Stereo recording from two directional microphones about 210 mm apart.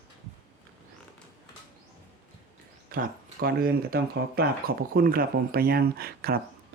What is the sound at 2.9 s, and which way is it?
Speech, 45° right (ahead or behind).